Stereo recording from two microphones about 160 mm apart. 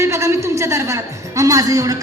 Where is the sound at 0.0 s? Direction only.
15° right (ahead or behind).